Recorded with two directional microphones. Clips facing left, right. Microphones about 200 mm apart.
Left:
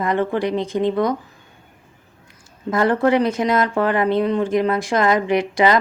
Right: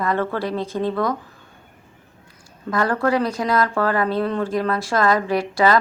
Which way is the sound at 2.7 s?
20° left (ahead or behind).